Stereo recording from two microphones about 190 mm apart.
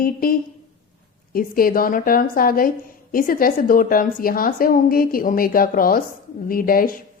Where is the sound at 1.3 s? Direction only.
50° left (ahead or behind).